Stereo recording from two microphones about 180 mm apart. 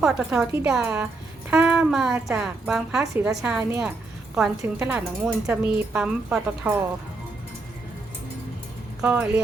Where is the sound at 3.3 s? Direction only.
5° right (ahead or behind).